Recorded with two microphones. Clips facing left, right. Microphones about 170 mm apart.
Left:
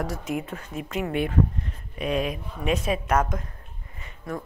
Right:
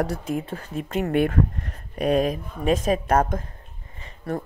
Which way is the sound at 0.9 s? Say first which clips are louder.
Right 3 dB; 50° right (ahead or behind).